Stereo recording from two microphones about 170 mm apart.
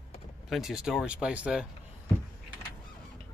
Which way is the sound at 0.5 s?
5° right (ahead or behind).